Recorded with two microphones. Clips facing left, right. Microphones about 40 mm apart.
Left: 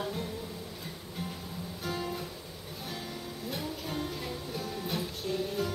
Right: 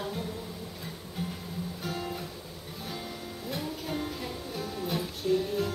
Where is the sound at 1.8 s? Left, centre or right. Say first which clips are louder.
Left 2 dB; centre.